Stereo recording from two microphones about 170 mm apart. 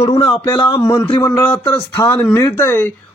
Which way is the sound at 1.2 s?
15° left (ahead or behind).